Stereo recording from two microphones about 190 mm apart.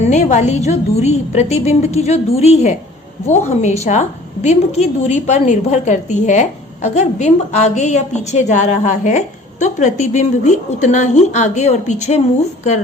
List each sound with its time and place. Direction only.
0.0 s a woman's voice: 40° left (ahead or behind)